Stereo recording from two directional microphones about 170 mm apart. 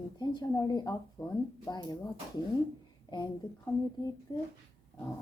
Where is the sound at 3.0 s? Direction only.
25° left (ahead or behind).